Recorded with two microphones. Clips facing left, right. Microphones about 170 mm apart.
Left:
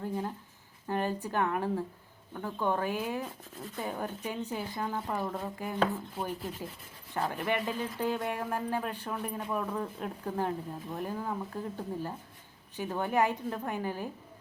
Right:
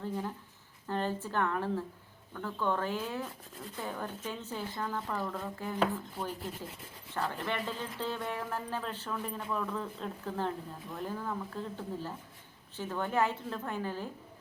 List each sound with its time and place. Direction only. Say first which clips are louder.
0.9 s speech: left 2 dB; 15° left (ahead or behind)